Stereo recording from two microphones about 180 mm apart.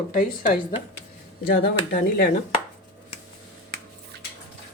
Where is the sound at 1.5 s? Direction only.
60° left (ahead or behind).